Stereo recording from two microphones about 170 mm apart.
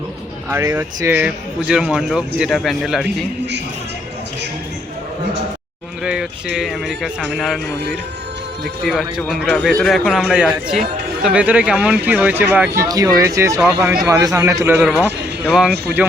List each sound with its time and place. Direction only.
0.5 s speech: 15° right (ahead or behind); by 3.2 s centre (ahead or behind)
6.0 s a sound: 5° right (ahead or behind)
6.6 s a man's voice: centre (ahead or behind)
8.6 s speech: centre (ahead or behind)